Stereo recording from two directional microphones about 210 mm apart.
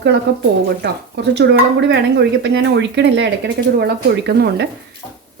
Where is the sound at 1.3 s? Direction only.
55° right (ahead or behind).